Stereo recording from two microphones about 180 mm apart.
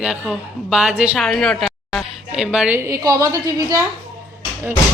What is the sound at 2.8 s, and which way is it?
A woman's voice, 20° right (ahead or behind).